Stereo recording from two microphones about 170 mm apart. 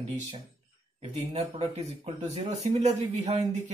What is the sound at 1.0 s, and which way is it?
Speech, 40° right (ahead or behind).